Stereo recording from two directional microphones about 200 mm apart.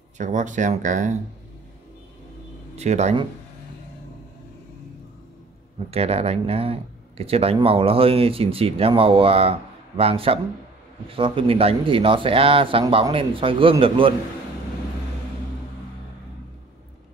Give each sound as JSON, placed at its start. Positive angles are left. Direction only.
{"t": 0.2, "sound": "speech", "side_deg": -35}
{"t": 2.7, "sound": "speech", "side_deg": -35}
{"t": 5.9, "sound": "speech", "side_deg": -30}